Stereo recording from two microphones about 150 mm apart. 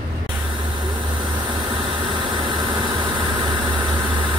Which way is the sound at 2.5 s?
30° right (ahead or behind).